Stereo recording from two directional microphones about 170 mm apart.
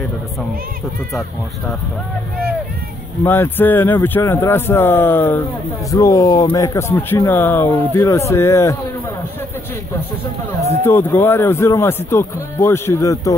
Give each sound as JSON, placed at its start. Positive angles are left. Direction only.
{"t": 3.3, "sound": "speech", "side_deg": 10}
{"t": 10.8, "sound": "speech", "side_deg": 15}